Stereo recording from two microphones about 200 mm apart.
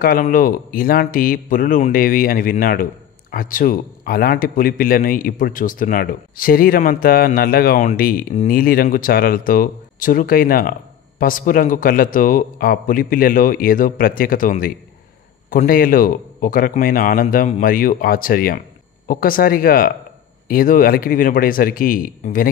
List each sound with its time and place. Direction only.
0.0 s speech: 45° left (ahead or behind)